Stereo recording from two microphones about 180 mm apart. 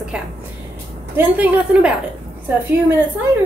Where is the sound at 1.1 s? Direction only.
10° right (ahead or behind).